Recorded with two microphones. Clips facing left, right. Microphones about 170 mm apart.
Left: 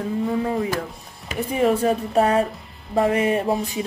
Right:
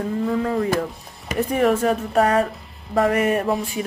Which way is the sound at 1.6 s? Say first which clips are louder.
Left 1 dB; 35° left (ahead or behind).